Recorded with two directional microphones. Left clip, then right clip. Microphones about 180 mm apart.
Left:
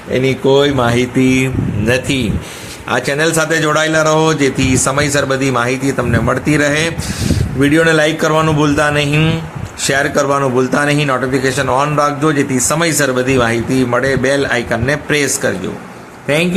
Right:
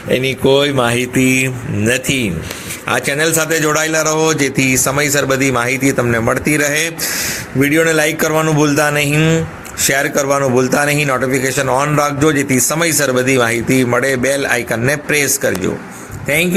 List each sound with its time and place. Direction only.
0.1 s a man's voice: 15° right (ahead or behind)
2.9 s a man's voice: 15° right (ahead or behind)